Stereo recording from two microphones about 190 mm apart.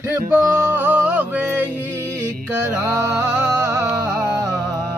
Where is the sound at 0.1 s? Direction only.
15° right (ahead or behind).